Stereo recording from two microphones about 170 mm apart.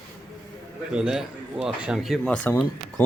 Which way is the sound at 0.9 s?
5° right (ahead or behind).